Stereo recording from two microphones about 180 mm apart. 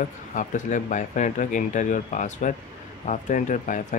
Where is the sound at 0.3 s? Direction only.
45° left (ahead or behind).